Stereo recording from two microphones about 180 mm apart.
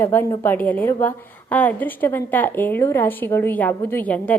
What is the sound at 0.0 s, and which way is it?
A woman's voice, 15° left (ahead or behind).